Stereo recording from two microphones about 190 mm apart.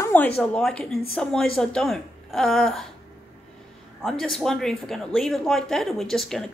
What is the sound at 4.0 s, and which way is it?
Speech, centre (ahead or behind).